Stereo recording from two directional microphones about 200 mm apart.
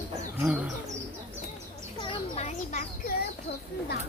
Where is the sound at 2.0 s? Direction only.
30° left (ahead or behind).